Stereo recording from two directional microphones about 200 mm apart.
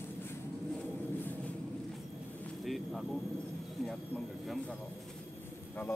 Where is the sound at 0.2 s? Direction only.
10° left (ahead or behind).